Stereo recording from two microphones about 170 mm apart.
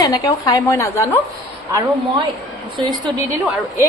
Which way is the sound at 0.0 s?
20° left (ahead or behind).